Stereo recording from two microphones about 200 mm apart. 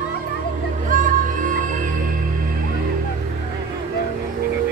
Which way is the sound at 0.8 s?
40° right (ahead or behind).